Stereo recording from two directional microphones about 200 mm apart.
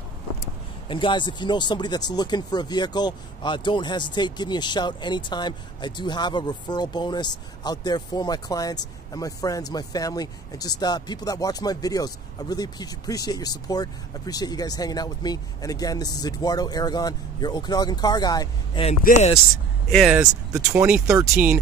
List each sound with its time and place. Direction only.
0.8 s speech: 25° left (ahead or behind)
18.9 s speech: 35° left (ahead or behind)
19.9 s speech: centre (ahead or behind)